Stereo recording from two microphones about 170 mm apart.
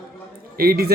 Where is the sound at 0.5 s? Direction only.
65° right (ahead or behind).